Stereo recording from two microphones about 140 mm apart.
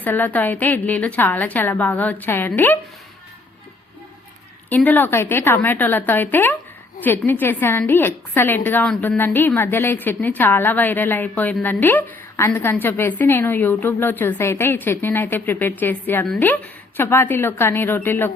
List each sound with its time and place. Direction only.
0.0 s a woman's voice: 10° left (ahead or behind)
4.7 s a woman's voice: 10° left (ahead or behind)